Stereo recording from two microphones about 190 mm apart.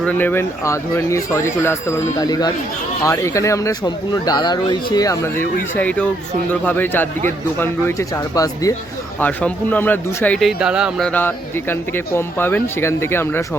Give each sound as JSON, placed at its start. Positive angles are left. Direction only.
{"t": 0.0, "sound": "speech", "side_deg": 10}
{"t": 10.6, "sound": "speech", "side_deg": -5}